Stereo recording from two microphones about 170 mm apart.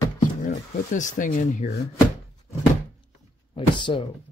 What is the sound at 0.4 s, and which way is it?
Speech, 50° left (ahead or behind).